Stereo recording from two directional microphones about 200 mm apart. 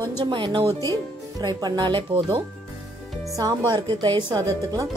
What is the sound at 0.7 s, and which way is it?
Speech, 15° left (ahead or behind).